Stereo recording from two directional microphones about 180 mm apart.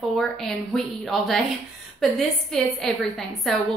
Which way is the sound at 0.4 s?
Centre (ahead or behind).